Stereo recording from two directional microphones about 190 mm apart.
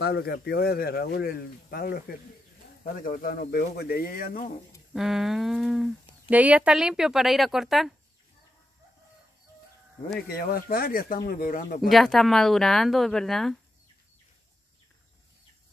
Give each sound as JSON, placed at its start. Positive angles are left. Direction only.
{"t": 0.0, "sound": "speech", "side_deg": 55}
{"t": 4.9, "sound": "speech", "side_deg": 0}
{"t": 10.2, "sound": "speech", "side_deg": 50}
{"t": 11.9, "sound": "speech", "side_deg": 0}